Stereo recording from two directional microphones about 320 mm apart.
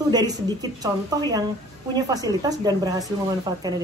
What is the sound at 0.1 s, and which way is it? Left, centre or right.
Speech, centre.